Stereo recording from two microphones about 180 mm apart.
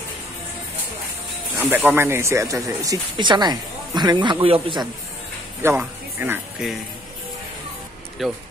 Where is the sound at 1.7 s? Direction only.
10° right (ahead or behind); by 4.6 s 30° right (ahead or behind).